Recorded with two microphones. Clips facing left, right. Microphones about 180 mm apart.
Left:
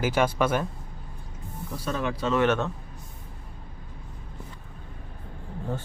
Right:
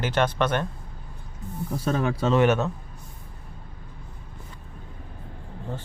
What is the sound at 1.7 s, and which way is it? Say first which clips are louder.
Speech: right 4 dB; 50° right (ahead or behind).